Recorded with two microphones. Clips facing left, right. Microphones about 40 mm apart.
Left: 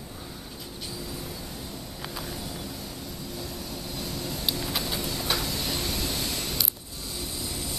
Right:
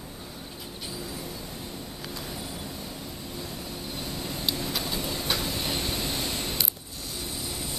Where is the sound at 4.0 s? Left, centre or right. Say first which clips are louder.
Left 1 dB; centre.